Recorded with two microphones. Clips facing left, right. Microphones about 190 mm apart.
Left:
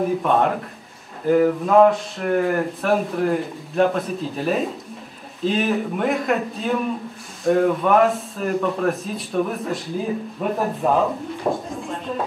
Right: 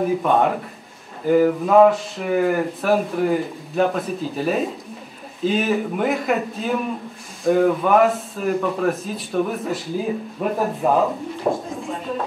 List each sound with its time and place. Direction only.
0.0 s speech: centre (ahead or behind)